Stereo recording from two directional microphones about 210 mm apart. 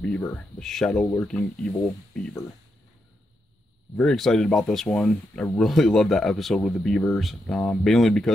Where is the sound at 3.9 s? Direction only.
Centre (ahead or behind).